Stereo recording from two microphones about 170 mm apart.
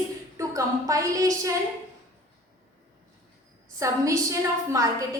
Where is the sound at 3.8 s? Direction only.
20° right (ahead or behind).